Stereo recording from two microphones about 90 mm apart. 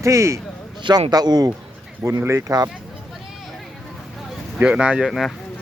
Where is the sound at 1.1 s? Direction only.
50° right (ahead or behind).